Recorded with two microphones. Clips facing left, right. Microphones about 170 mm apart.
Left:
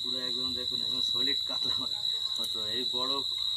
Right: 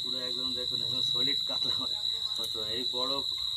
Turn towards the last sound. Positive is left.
turn(degrees=-5)  # may be behind; listen again after turning